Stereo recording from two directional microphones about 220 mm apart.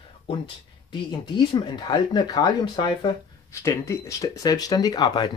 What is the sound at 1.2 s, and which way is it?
Speech, 20° left (ahead or behind).